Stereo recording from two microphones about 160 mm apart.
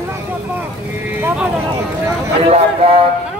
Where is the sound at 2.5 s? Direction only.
40° right (ahead or behind).